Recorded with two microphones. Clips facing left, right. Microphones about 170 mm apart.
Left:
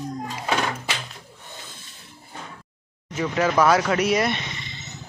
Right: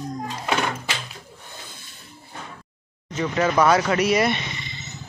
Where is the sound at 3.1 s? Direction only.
Centre (ahead or behind).